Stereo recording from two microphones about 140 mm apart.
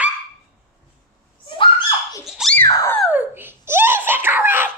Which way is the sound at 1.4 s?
35° left (ahead or behind).